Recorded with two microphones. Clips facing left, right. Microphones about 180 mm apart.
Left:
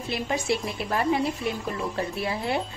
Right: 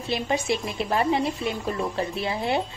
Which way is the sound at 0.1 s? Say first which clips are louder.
Right 2 dB; 20° right (ahead or behind).